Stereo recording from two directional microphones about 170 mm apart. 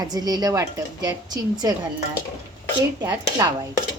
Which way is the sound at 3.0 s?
25° right (ahead or behind).